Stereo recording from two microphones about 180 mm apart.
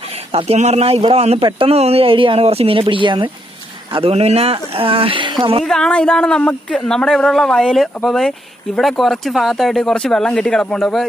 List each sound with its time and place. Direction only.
0.3 s speech: 35° right (ahead or behind)
5.7 s speech: 5° left (ahead or behind)